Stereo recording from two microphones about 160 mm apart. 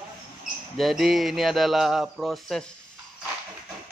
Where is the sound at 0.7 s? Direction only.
Centre (ahead or behind).